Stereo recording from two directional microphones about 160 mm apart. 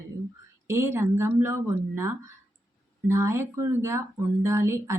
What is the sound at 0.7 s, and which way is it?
A woman's voice, 15° right (ahead or behind).